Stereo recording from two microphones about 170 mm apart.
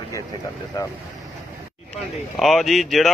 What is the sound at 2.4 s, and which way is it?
Speech, centre (ahead or behind).